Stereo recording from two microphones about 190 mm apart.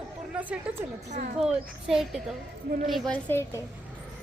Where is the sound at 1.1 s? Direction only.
40° right (ahead or behind).